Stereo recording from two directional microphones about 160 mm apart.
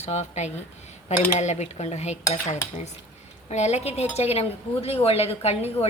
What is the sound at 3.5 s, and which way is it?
A woman's voice, 45° left (ahead or behind).